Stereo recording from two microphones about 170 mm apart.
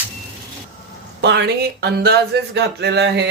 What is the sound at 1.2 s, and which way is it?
Speech, 85° right.